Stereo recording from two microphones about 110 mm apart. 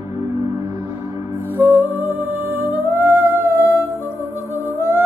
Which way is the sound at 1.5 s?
20° right (ahead or behind).